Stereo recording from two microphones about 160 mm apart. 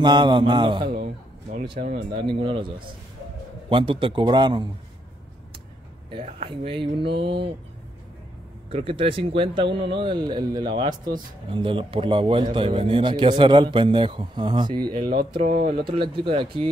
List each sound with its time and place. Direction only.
0.0 s a man's voice: 30° right (ahead or behind)
1.8 s speech: 45° right (ahead or behind)
2.1 s a man's voice: 30° right (ahead or behind)
6.2 s a man's voice: 35° right (ahead or behind)
8.6 s a man's voice: 35° right (ahead or behind)
15.0 s speech: 70° right (ahead or behind)
15.9 s a man's voice: 35° right (ahead or behind)